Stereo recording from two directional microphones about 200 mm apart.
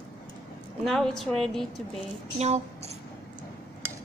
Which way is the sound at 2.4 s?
35° right (ahead or behind).